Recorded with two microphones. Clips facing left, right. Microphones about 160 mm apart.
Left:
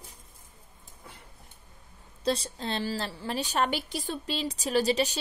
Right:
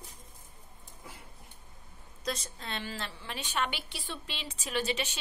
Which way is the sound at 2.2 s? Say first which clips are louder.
Left 8 dB; 30° left (ahead or behind).